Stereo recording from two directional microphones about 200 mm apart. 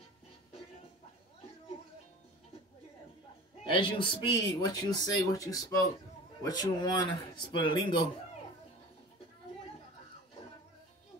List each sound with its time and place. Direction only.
3.6 s speech: 25° left (ahead or behind)